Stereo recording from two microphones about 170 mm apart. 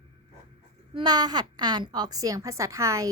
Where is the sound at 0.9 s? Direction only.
25° right (ahead or behind).